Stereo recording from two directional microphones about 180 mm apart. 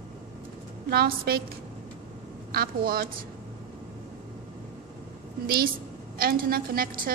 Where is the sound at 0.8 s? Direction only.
60° right (ahead or behind).